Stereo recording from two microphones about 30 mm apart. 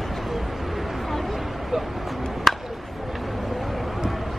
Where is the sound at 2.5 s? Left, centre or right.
Centre.